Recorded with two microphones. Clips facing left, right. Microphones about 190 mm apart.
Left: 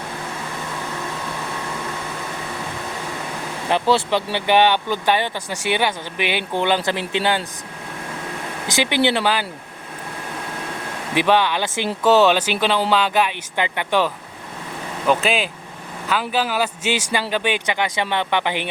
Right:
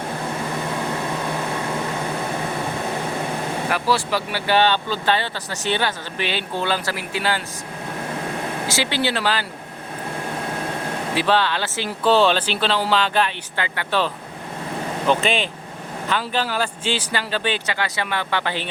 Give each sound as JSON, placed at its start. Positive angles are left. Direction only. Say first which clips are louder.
{"t": 3.7, "sound": "speech", "louder": "left 5 dB", "side_deg": 25}
{"t": 8.6, "sound": "speech", "louder": "left 5 dB", "side_deg": 15}
{"t": 11.1, "sound": "speech", "louder": "left 3 dB", "side_deg": 15}
{"t": 15.0, "sound": "speech", "louder": "left 1 dB", "side_deg": 5}